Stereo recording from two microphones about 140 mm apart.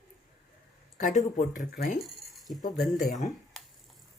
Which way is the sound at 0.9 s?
60° left (ahead or behind).